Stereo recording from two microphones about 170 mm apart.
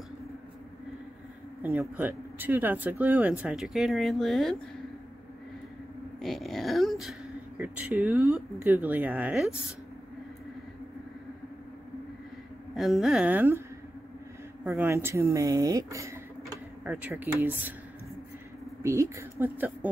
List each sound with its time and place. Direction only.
1.6 s speech: 10° right (ahead or behind)
6.2 s speech: centre (ahead or behind)
12.7 s speech: centre (ahead or behind)
14.6 s speech: 10° right (ahead or behind)
18.8 s a woman's voice: 15° right (ahead or behind)